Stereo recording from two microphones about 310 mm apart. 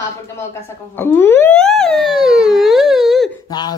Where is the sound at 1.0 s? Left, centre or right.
Centre.